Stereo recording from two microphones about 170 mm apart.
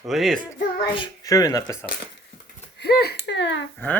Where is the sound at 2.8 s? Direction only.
70° left (ahead or behind).